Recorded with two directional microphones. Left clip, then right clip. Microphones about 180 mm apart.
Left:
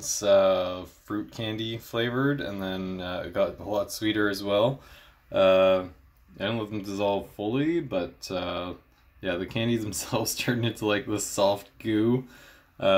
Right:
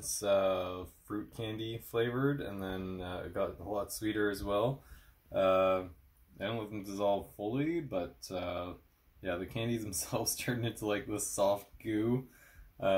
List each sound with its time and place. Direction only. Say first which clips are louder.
0.0 s speech: left 9 dB; 5° left (ahead or behind)
5.5 s speech: left 8 dB; 30° left (ahead or behind)
6.3 s speech: left 8 dB; 15° left (ahead or behind)
10.8 s speech: left 8 dB; 25° left (ahead or behind)
11.3 s speech: left 6 dB; 10° left (ahead or behind)